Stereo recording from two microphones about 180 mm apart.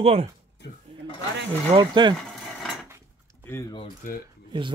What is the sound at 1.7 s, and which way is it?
Speech, 25° right (ahead or behind).